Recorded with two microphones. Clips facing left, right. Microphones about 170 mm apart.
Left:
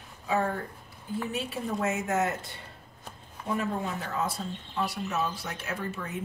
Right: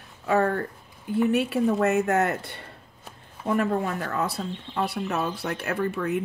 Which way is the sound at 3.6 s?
60° right (ahead or behind).